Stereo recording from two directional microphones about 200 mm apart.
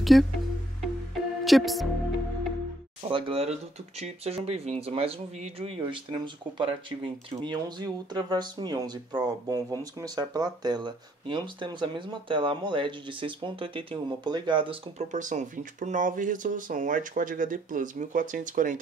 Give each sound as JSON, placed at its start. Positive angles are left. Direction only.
{"t": 0.0, "sound": "speech", "side_deg": 0}
{"t": 1.4, "sound": "speech", "side_deg": 0}
{"t": 3.1, "sound": "speech", "side_deg": -25}